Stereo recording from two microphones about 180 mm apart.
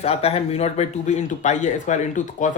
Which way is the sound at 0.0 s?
35° left (ahead or behind).